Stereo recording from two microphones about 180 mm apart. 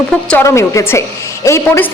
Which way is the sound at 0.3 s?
15° left (ahead or behind).